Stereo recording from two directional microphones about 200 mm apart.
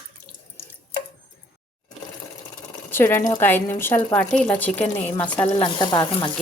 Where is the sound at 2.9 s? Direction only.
10° left (ahead or behind).